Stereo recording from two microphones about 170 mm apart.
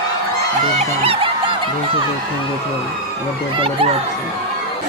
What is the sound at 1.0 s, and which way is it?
Music, 30° right (ahead or behind).